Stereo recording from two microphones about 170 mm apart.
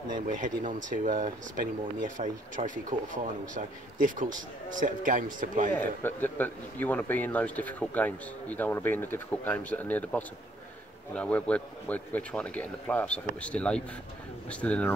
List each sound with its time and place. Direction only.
0.3 s speech: 50° right (ahead or behind)
5.8 s speech: 10° left (ahead or behind)